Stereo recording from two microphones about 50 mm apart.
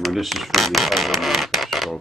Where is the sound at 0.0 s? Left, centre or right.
Centre.